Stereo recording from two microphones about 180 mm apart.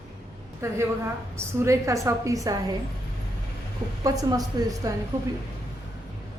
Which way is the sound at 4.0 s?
20° right (ahead or behind).